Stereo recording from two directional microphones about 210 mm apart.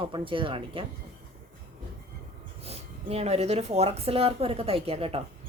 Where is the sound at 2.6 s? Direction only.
30° right (ahead or behind).